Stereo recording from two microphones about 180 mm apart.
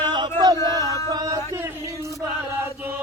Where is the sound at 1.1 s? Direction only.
20° right (ahead or behind).